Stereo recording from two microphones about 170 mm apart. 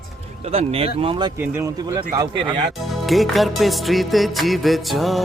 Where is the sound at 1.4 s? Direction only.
15° right (ahead or behind).